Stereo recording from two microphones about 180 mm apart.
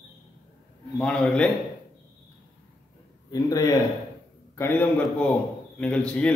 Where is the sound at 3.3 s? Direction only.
20° left (ahead or behind).